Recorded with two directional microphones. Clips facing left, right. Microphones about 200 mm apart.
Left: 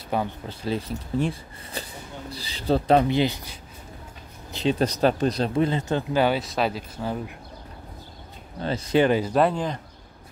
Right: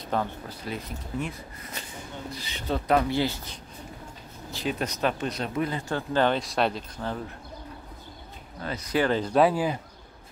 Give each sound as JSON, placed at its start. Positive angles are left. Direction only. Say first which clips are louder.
{"t": 0.1, "sound": "speech", "louder": "left 2 dB", "side_deg": 10}
{"t": 0.5, "sound": "speech", "louder": "left 7 dB", "side_deg": 30}
{"t": 4.5, "sound": "a sound", "louder": "left 6 dB", "side_deg": 20}
{"t": 4.7, "sound": "speech", "louder": "left 6 dB", "side_deg": 35}
{"t": 6.1, "sound": "speech", "louder": "even", "side_deg": 10}
{"t": 8.5, "sound": "speech", "louder": "left 5 dB", "side_deg": 30}
{"t": 9.1, "sound": "speech", "louder": "left 1 dB", "side_deg": 5}